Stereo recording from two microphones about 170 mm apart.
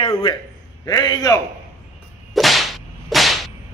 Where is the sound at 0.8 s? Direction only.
20° left (ahead or behind).